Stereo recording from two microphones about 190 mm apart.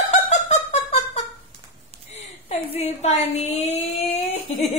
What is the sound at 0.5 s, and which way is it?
Music, 35° left (ahead or behind).